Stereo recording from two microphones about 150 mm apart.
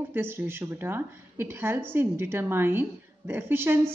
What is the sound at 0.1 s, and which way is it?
Speech, 15° right (ahead or behind).